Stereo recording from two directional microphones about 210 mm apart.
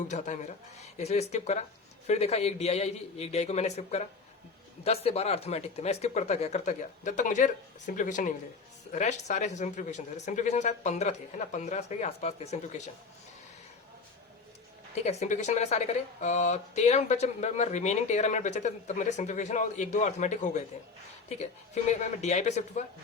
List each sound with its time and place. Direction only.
0.1 s speech: 35° left (ahead or behind)
15.0 s speech: 30° left (ahead or behind)
21.8 s speech: 35° left (ahead or behind)